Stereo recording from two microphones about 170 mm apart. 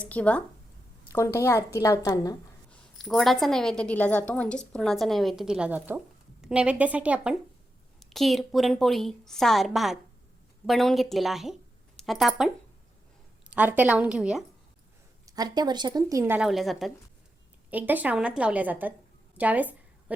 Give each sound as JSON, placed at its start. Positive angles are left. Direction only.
{"t": 0.0, "sound": "a woman's voice", "side_deg": 10}
{"t": 2.6, "sound": "a woman's voice", "side_deg": 5}
{"t": 13.5, "sound": "a woman's voice", "side_deg": -10}
{"t": 15.3, "sound": "speech", "side_deg": -25}
{"t": 16.5, "sound": "a woman's voice", "side_deg": 0}
{"t": 19.4, "sound": "a sound", "side_deg": -10}